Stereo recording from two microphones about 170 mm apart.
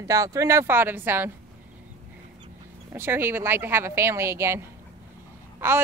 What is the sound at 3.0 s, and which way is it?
Speech, 15° right (ahead or behind).